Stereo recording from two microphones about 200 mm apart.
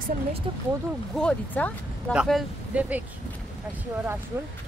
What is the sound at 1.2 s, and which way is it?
Speech, 5° left (ahead or behind).